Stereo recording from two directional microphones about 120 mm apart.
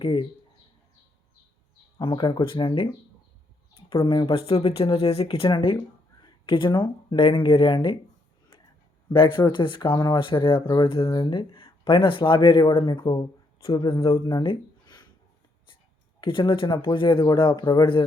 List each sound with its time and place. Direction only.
0.0 s speech: 45° left (ahead or behind)
2.0 s speech: 45° left (ahead or behind)
9.0 s speech: 45° left (ahead or behind)
14.4 s a sound: 45° left (ahead or behind)
16.2 s speech: 45° left (ahead or behind)